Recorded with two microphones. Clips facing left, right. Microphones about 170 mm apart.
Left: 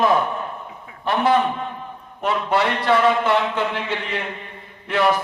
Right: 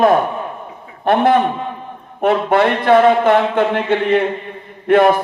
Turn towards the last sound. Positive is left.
turn(degrees=-55)  # may be behind; listen again after turning